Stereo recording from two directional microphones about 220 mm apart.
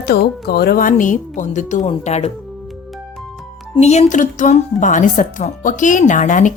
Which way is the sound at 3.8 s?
30° left (ahead or behind).